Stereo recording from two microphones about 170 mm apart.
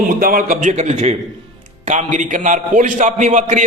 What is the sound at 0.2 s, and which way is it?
A man's voice, 55° right (ahead or behind).